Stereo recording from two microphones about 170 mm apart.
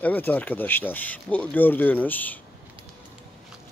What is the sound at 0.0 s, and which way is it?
Speech, 10° left (ahead or behind).